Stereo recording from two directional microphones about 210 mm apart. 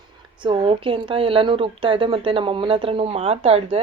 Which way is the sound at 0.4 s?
25° right (ahead or behind).